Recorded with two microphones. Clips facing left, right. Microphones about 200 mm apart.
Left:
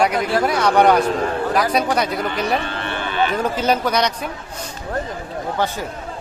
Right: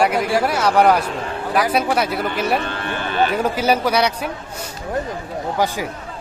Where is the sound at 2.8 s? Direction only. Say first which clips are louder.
Right 1 dB; 45° right (ahead or behind).